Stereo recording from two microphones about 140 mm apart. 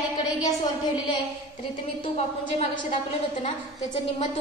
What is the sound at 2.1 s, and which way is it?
Speech, 50° left (ahead or behind).